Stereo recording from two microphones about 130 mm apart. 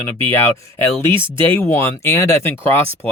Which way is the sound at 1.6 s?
20° left (ahead or behind).